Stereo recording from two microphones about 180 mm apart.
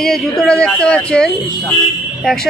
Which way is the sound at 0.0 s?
Centre (ahead or behind).